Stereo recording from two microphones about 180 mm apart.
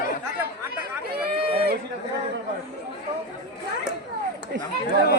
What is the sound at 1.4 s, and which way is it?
Run, 30° right (ahead or behind).